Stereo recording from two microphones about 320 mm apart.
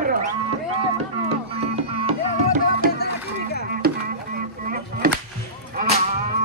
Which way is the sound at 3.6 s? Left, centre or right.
Right.